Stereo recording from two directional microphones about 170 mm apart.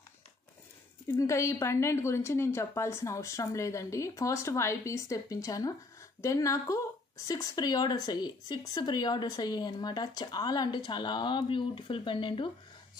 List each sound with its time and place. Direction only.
1.2 s a woman's voice: 15° left (ahead or behind)